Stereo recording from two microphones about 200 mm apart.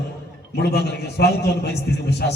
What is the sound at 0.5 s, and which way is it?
A man's voice, 55° left (ahead or behind).